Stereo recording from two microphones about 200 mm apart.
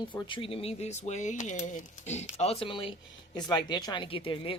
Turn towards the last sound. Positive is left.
turn(degrees=25)  # may be behind; listen again after turning